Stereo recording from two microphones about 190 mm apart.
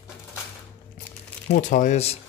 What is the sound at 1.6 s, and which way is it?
Speech, 40° left (ahead or behind).